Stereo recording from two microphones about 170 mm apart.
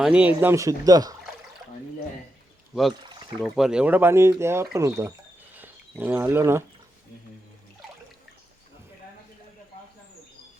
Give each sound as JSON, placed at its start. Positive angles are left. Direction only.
{"t": 0.0, "sound": "speech", "side_deg": -5}
{"t": 3.4, "sound": "speech", "side_deg": 0}